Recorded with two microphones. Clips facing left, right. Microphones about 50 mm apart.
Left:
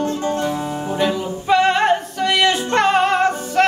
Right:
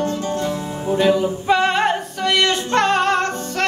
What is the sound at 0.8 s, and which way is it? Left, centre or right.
Music, centre.